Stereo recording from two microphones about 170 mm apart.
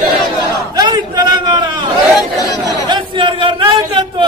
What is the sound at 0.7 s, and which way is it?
Chatter, 25° right (ahead or behind).